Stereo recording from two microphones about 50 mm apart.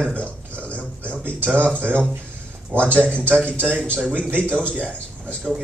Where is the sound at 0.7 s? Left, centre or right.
Right.